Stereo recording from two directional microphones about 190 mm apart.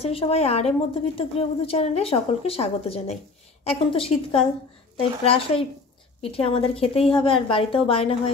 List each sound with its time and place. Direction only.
0.0 s a woman's voice: 30° left (ahead or behind)